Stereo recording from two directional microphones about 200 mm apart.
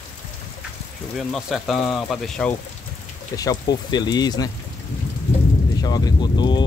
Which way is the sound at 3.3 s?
20° left (ahead or behind).